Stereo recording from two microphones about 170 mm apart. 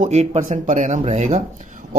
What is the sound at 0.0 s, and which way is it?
Speech, 40° right (ahead or behind).